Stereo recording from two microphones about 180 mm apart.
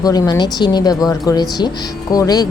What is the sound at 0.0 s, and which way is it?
Speech, 20° left (ahead or behind).